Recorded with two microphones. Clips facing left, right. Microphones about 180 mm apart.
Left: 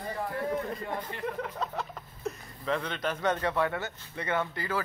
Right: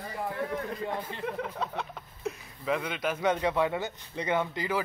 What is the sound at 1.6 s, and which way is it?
A man's voice, centre (ahead or behind).